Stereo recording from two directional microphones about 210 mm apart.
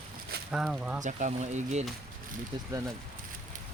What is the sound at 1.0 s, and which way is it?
Speech, 35° right (ahead or behind).